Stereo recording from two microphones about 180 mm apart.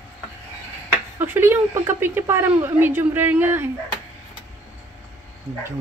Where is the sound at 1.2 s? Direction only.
15° right (ahead or behind).